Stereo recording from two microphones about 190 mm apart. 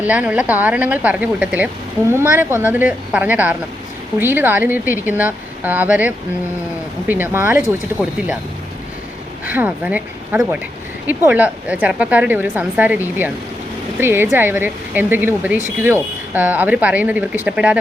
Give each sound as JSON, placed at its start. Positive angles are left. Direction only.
{"t": 0.0, "sound": "speech", "side_deg": -5}
{"t": 9.5, "sound": "speech", "side_deg": -10}